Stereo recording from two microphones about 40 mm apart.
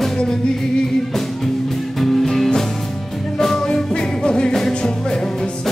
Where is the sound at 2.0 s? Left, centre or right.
Centre.